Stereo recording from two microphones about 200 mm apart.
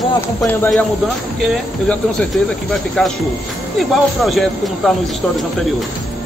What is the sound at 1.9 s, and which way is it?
Speech, 5° left (ahead or behind).